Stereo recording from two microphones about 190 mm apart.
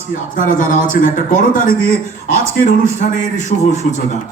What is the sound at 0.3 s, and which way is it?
A man's voice, 45° left (ahead or behind).